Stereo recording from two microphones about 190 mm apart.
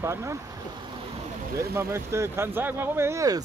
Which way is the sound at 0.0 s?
15° right (ahead or behind).